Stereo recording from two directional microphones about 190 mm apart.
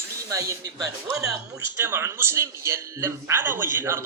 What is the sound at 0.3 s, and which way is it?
A man's voice, 15° right (ahead or behind).